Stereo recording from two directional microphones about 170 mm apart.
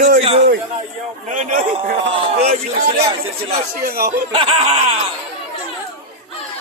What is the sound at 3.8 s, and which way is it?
Speech, 60° right (ahead or behind).